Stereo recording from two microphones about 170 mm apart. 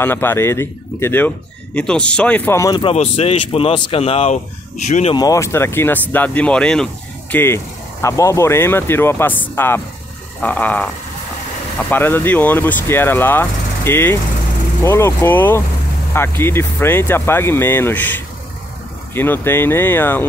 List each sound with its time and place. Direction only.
0.0 s speech: 15° left (ahead or behind)
2.8 s speech: 35° left (ahead or behind)
5.1 s speech: 20° left (ahead or behind)
11.9 s speech: 10° left (ahead or behind)